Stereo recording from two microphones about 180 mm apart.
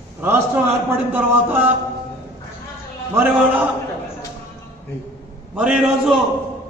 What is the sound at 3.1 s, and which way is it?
Speech, 10° right (ahead or behind).